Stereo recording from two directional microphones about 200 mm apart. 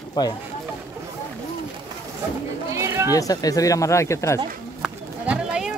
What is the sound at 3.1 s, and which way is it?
Speech, 15° left (ahead or behind).